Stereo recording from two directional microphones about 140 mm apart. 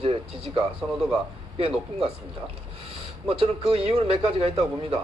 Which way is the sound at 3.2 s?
45° right (ahead or behind).